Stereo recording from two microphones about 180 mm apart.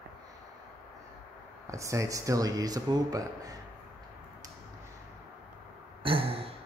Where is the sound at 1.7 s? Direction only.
15° right (ahead or behind).